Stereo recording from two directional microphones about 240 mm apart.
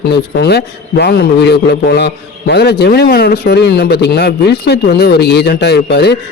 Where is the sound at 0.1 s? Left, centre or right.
Left.